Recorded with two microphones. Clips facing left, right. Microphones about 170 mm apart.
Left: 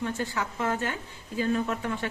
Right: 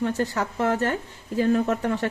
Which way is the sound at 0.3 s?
40° right (ahead or behind).